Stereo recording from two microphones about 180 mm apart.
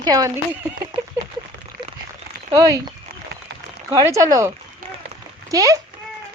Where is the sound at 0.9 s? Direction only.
30° right (ahead or behind).